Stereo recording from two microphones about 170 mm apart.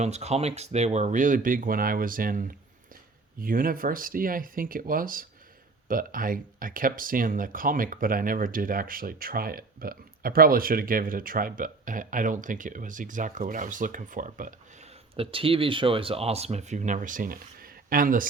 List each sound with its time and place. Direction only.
0.0 s speech: 40° right (ahead or behind)
15.1 s speech: 35° right (ahead or behind); by 18.3 s 55° right (ahead or behind)